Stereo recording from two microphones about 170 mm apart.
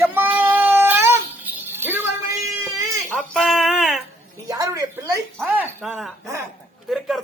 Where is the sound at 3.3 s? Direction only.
Centre (ahead or behind).